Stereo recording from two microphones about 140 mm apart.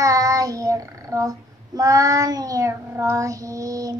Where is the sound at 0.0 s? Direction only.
25° right (ahead or behind).